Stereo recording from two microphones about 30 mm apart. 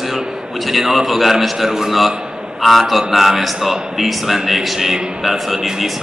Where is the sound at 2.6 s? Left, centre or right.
Centre.